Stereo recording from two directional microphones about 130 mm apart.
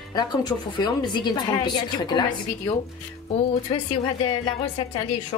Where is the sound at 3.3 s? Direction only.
45° left (ahead or behind).